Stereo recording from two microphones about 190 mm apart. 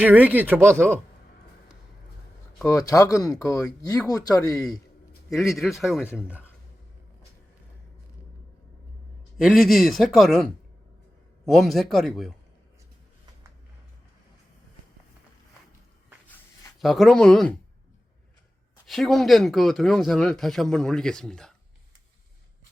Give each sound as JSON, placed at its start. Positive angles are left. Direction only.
{"t": 0.0, "sound": "speech", "side_deg": -10}
{"t": 2.6, "sound": "speech", "side_deg": 15}
{"t": 5.3, "sound": "speech", "side_deg": 0}
{"t": 9.4, "sound": "speech", "side_deg": 0}
{"t": 16.8, "sound": "speech", "side_deg": 0}
{"t": 18.9, "sound": "speech", "side_deg": 0}